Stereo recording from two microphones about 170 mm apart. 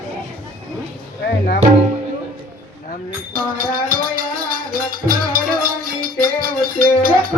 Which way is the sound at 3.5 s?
55° right (ahead or behind).